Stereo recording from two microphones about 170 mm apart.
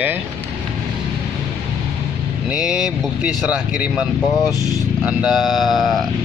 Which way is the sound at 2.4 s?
5° right (ahead or behind).